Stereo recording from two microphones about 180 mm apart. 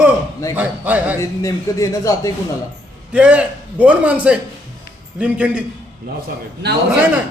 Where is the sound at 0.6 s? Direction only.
10° right (ahead or behind).